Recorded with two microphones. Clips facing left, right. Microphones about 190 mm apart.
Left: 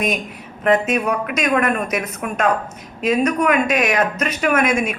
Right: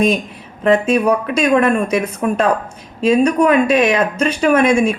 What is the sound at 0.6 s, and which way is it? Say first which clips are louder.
A woman's voice: right 4 dB; 30° right (ahead or behind).